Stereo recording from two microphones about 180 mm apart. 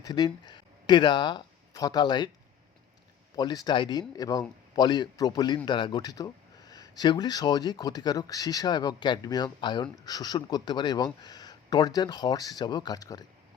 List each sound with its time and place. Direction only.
0.0 s speech: 25° left (ahead or behind)
3.3 s speech: 20° left (ahead or behind)